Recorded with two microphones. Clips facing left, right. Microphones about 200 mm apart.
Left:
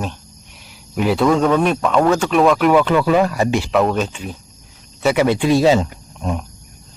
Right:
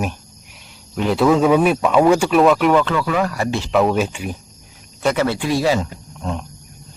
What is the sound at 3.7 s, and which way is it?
Speech, centre (ahead or behind).